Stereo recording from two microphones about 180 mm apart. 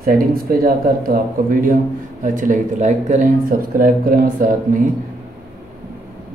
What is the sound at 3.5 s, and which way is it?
Speech, 55° right (ahead or behind).